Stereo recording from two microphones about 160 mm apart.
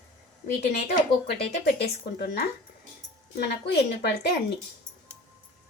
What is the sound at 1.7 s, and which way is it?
A woman's voice, 90° left.